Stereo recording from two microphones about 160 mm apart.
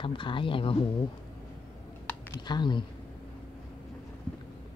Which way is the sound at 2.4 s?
30° left (ahead or behind).